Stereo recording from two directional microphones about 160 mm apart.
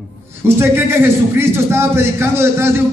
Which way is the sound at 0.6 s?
15° right (ahead or behind).